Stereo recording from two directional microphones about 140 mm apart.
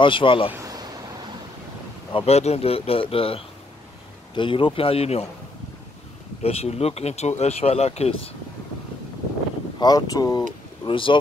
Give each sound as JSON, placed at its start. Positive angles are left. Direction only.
{"t": 0.0, "sound": "speech", "side_deg": 35}
{"t": 0.5, "sound": "a sound", "side_deg": -20}
{"t": 2.1, "sound": "speech", "side_deg": 50}
{"t": 6.4, "sound": "speech", "side_deg": 45}
{"t": 9.8, "sound": "speech", "side_deg": 25}
{"t": 10.9, "sound": "speech", "side_deg": 40}